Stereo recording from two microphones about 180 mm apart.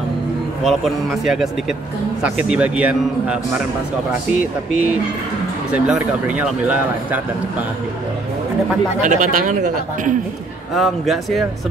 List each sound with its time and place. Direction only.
0.7 s a man's voice: centre (ahead or behind)
5.9 s a man's voice: 5° right (ahead or behind)
9.0 s speech: 45° right (ahead or behind)
10.7 s a man's voice: centre (ahead or behind)